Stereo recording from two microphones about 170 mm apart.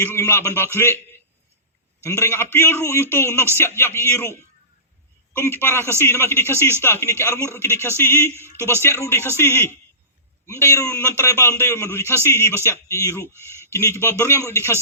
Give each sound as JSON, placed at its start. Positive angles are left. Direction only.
{"t": 0.0, "sound": "a man's voice", "side_deg": 15}
{"t": 2.0, "sound": "a man's voice", "side_deg": 15}